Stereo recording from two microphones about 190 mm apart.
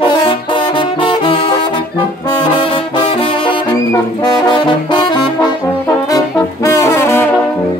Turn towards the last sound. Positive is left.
turn(degrees=15)  # may be behind; listen again after turning